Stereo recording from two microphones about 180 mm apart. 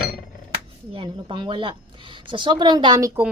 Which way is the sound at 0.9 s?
25° right (ahead or behind).